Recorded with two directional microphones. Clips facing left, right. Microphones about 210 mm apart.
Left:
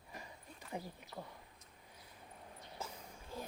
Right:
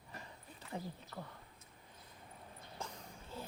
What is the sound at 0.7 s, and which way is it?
Speech, 15° left (ahead or behind).